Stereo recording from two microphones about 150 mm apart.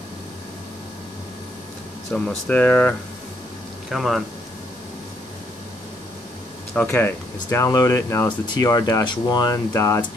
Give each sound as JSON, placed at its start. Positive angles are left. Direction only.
{"t": 2.1, "sound": "speech", "side_deg": 5}
{"t": 6.7, "sound": "speech", "side_deg": 10}